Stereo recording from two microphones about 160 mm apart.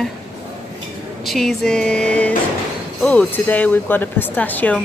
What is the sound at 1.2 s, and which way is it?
A woman's voice, centre (ahead or behind).